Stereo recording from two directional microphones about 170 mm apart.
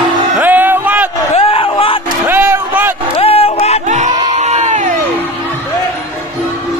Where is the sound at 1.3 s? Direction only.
35° left (ahead or behind).